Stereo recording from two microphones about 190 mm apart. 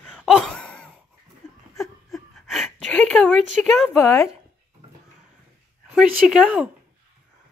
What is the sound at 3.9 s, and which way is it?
Speech, 15° left (ahead or behind).